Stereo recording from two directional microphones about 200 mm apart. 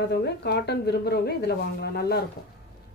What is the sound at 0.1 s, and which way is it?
A woman's voice, 55° left (ahead or behind).